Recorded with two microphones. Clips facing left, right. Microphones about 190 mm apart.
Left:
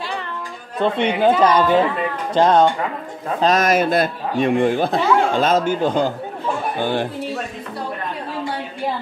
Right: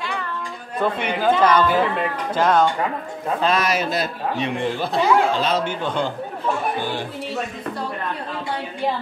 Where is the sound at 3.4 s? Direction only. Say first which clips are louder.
Left 6 dB; 45° left (ahead or behind).